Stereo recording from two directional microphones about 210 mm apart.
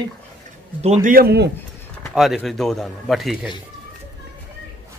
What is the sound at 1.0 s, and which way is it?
Speech, 45° right (ahead or behind).